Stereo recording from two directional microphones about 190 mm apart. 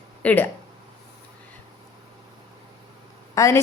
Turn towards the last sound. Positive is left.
turn(degrees=15)  # may be behind; listen again after turning